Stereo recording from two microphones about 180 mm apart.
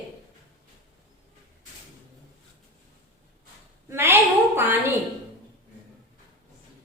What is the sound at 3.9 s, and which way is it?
A woman's voice, 15° right (ahead or behind).